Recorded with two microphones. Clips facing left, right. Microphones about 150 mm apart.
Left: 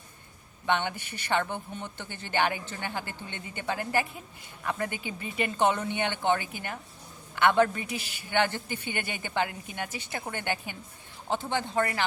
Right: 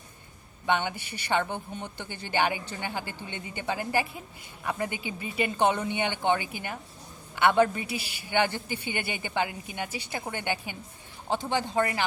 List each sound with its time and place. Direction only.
0.7 s a woman's voice: 10° right (ahead or behind)
4.9 s speech: 45° left (ahead or behind)
5.4 s a woman's voice: 10° right (ahead or behind)
6.4 s speech: 45° left (ahead or behind)
7.3 s a woman's voice: 15° right (ahead or behind)